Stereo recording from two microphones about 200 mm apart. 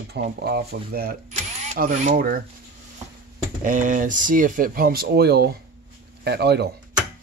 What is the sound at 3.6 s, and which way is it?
Speech, 40° right (ahead or behind).